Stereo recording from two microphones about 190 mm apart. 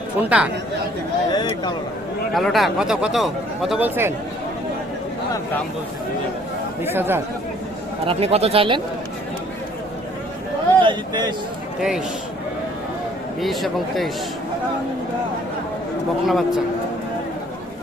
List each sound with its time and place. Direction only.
0.2 s speech: 5° right (ahead or behind)
1.3 s speech: 25° left (ahead or behind)
2.3 s speech: centre (ahead or behind)
6.8 s speech: 10° right (ahead or behind)
8.0 s speech: 30° right (ahead or behind)
10.8 s speech: 25° right (ahead or behind)
11.8 s speech: 5° right (ahead or behind)
13.4 s speech: centre (ahead or behind)
16.2 s speech: centre (ahead or behind)